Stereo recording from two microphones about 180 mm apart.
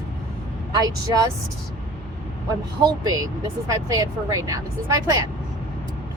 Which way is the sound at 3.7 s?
20° right (ahead or behind).